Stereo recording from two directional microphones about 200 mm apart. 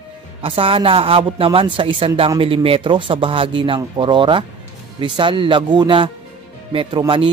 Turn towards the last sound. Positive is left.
turn(degrees=-25)  # may be behind; listen again after turning